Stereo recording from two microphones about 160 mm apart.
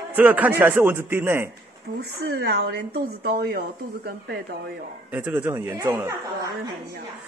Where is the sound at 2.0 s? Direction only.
90° right.